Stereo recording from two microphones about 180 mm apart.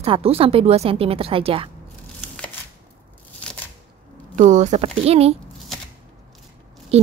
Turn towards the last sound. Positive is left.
turn(degrees=-35)  # may be behind; listen again after turning